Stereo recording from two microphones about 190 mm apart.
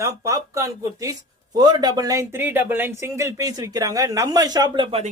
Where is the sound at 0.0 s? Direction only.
15° right (ahead or behind).